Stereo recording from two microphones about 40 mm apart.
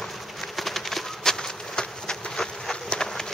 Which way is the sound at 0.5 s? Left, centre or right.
Centre.